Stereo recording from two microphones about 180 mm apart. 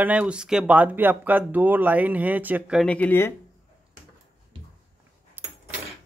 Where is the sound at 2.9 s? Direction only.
10° left (ahead or behind).